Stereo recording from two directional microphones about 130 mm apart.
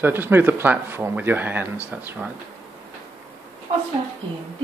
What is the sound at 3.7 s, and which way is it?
Speech, 45° right (ahead or behind).